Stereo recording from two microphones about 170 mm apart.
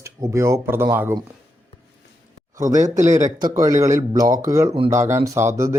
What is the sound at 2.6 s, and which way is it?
Speech, 20° right (ahead or behind).